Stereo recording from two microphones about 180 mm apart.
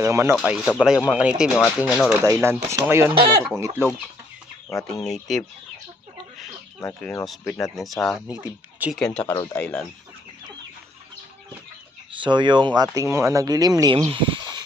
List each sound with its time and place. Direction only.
0.0 s speech: 15° right (ahead or behind)
2.2 s speech: 15° right (ahead or behind)
5.0 s speech: 5° left (ahead or behind)
6.8 s speech: 10° left (ahead or behind)
7.7 s speech: centre (ahead or behind)
9.2 s speech: 20° left (ahead or behind)
12.1 s speech: 25° right (ahead or behind)